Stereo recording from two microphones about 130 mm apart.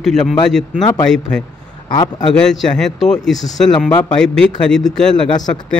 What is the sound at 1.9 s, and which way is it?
Speech, 35° left (ahead or behind).